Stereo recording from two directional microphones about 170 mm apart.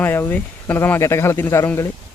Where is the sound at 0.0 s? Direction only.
10° left (ahead or behind).